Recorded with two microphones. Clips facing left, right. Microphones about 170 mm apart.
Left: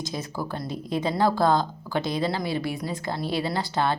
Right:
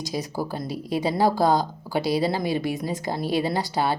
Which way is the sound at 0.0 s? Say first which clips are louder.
Right 3 dB; 15° right (ahead or behind).